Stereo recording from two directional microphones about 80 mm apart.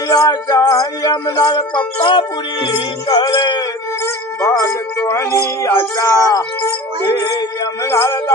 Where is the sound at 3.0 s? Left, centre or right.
Left.